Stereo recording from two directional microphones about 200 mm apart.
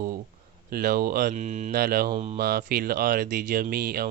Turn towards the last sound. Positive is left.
turn(degrees=-50)  # may be behind; listen again after turning